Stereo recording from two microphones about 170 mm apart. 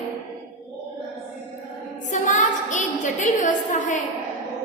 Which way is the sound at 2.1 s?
45° left (ahead or behind).